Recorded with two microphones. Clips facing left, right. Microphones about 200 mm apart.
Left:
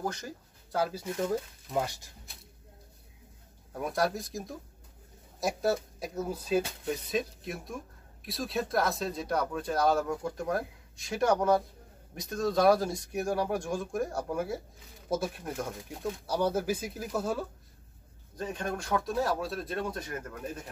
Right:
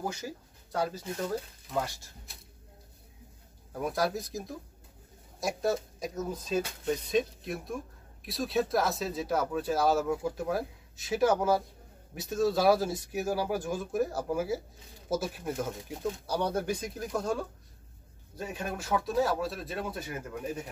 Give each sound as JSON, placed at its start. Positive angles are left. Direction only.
{"t": 0.0, "sound": "speech", "side_deg": -5}
{"t": 1.7, "sound": "speech", "side_deg": 15}
{"t": 3.7, "sound": "speech", "side_deg": 0}
{"t": 18.3, "sound": "speech", "side_deg": -5}